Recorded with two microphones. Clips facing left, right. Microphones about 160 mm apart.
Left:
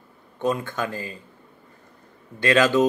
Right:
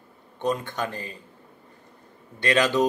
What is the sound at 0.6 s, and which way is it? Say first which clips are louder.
Speech: left 2 dB; 20° right (ahead or behind).